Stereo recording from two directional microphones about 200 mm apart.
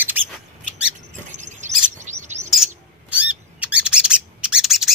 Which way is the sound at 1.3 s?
35° right (ahead or behind).